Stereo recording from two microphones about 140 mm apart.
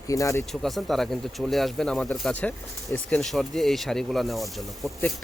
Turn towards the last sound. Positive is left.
turn(degrees=0)  # may be behind; listen again after turning